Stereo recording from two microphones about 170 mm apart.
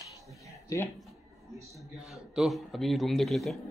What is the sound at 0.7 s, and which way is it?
Speech, 20° left (ahead or behind).